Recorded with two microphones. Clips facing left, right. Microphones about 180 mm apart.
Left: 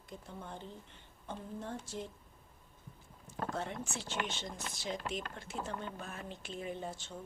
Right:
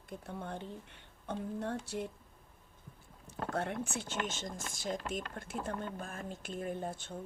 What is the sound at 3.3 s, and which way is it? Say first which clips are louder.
Speech: right 3 dB; 60° right (ahead or behind).